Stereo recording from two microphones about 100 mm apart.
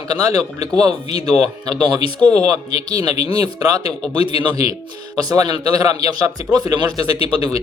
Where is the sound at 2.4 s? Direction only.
40° right (ahead or behind).